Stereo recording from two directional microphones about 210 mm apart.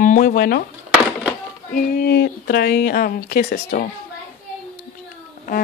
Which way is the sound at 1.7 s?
45° left (ahead or behind).